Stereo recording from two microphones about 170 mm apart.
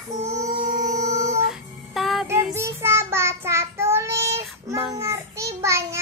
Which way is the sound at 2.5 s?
15° right (ahead or behind).